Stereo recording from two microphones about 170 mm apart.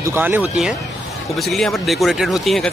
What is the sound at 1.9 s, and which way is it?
Speech, centre (ahead or behind).